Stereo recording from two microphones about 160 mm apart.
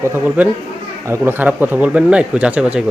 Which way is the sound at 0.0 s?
15° right (ahead or behind).